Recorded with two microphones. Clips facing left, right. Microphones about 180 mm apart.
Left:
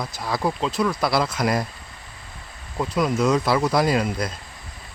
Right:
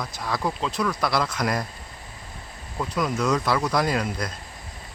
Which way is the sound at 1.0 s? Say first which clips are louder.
Left 3 dB; 5° left (ahead or behind).